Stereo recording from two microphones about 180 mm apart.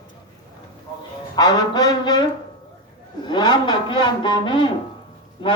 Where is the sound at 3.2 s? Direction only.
25° left (ahead or behind).